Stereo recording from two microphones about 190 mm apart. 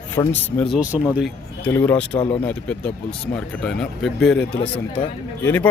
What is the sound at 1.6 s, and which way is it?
Speech, 10° left (ahead or behind).